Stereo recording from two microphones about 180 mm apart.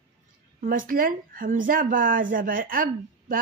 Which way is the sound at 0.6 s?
50° right (ahead or behind).